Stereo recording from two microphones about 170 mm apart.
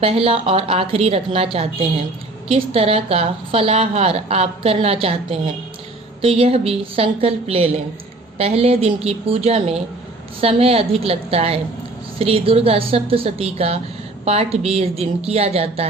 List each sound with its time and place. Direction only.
0.0 s a woman's voice: 35° right (ahead or behind)